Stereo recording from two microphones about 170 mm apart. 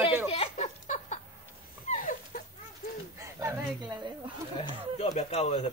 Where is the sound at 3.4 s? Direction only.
20° right (ahead or behind).